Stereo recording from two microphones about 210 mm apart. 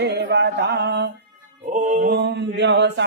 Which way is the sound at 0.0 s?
55° right (ahead or behind).